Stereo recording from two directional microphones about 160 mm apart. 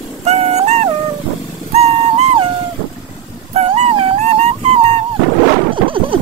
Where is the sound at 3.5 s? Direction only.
40° right (ahead or behind).